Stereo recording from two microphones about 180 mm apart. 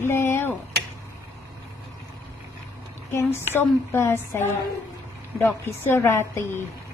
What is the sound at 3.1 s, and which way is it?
A woman's voice, 15° left (ahead or behind).